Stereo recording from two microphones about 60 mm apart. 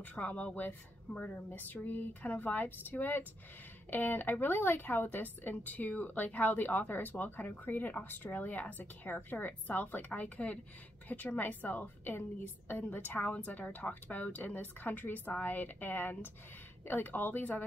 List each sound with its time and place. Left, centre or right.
0.0 s a woman's voice: left